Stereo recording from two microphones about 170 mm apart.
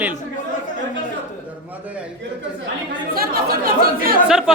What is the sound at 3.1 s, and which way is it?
Speech, 60° right (ahead or behind).